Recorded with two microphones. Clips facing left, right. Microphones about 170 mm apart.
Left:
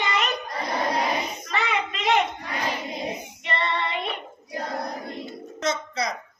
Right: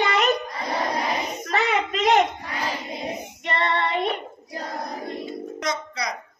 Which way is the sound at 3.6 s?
45° right (ahead or behind).